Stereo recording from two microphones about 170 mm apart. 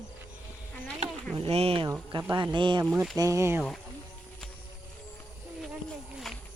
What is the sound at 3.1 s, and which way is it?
Speech, 20° right (ahead or behind).